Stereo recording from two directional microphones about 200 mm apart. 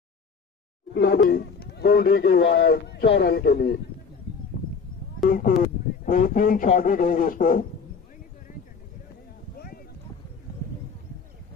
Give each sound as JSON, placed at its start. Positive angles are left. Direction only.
{"t": 0.9, "sound": "speech", "side_deg": 55}
{"t": 5.2, "sound": "speech", "side_deg": 45}
{"t": 9.6, "sound": "boat", "side_deg": 50}